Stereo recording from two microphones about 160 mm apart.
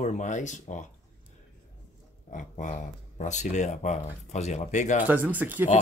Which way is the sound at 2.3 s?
50° left (ahead or behind).